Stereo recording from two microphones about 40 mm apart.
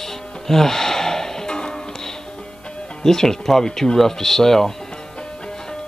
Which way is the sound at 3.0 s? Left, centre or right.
Centre.